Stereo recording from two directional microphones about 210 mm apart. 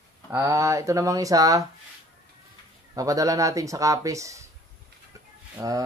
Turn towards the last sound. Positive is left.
turn(degrees=-15)  # may be behind; listen again after turning